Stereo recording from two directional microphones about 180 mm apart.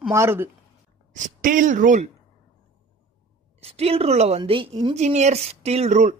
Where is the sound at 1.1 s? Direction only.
45° right (ahead or behind).